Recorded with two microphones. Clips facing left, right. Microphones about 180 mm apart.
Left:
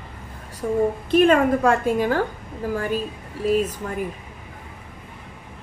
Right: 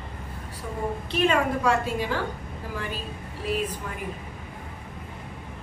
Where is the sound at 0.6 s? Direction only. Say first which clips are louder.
Left 10 dB; 40° left (ahead or behind).